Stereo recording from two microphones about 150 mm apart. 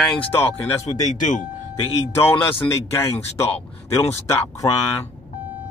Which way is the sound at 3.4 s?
45° left (ahead or behind).